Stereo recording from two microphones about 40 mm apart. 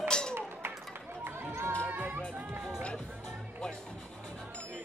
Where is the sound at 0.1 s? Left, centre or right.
Left.